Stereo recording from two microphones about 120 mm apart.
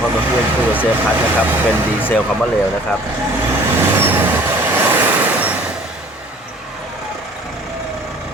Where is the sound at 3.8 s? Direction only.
20° right (ahead or behind).